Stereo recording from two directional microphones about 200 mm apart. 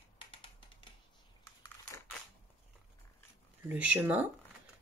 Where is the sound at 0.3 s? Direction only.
25° left (ahead or behind).